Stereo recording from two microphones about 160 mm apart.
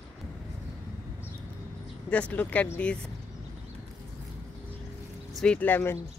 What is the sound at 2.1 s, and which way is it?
Speech, 10° left (ahead or behind).